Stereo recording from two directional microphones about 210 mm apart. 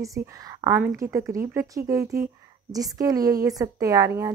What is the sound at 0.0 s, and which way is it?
A woman's voice, 15° right (ahead or behind).